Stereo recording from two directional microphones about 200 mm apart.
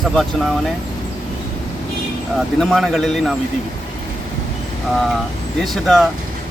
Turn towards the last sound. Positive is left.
turn(degrees=0)  # may be behind; listen again after turning